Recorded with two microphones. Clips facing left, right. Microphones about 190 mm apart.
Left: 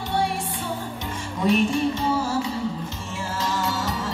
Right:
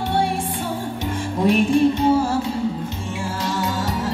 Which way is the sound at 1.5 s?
55° right (ahead or behind).